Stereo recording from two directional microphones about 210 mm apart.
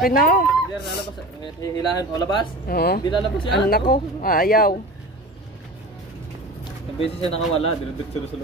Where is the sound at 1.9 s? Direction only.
20° left (ahead or behind).